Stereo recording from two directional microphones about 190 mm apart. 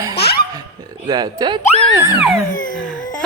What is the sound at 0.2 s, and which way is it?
Laughter, 60° left (ahead or behind).